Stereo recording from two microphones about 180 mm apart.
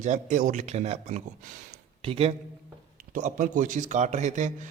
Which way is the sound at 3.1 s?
45° right (ahead or behind).